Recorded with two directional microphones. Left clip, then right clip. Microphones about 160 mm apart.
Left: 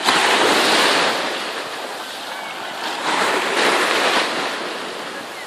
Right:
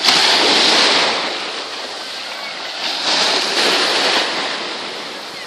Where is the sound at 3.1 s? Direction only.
50° right (ahead or behind).